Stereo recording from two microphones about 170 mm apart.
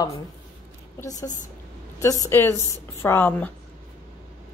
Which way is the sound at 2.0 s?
20° left (ahead or behind).